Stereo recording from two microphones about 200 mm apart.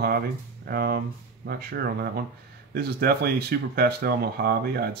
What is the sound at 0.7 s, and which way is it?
Speech, 50° right (ahead or behind).